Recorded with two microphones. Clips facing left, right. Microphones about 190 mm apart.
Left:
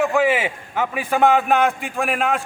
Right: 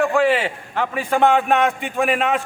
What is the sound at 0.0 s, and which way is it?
A man's voice, 5° left (ahead or behind).